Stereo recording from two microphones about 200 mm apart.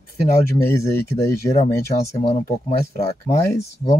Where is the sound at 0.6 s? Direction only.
10° left (ahead or behind).